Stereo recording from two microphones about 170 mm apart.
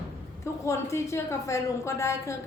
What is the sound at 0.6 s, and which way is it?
A woman's voice, 15° left (ahead or behind).